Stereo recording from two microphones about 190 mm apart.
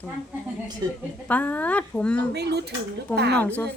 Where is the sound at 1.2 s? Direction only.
10° left (ahead or behind).